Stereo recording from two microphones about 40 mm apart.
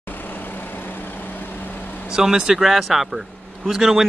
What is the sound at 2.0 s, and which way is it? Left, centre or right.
Speech, centre.